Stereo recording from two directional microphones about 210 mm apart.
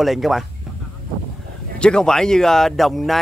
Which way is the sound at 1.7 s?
5° left (ahead or behind).